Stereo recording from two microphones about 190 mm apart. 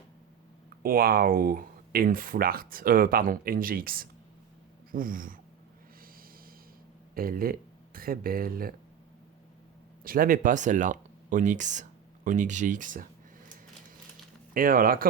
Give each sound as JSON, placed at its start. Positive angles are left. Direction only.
{"t": 0.8, "sound": "speech", "side_deg": -50}
{"t": 7.1, "sound": "speech", "side_deg": -50}
{"t": 10.0, "sound": "speech", "side_deg": -50}
{"t": 14.5, "sound": "speech", "side_deg": -45}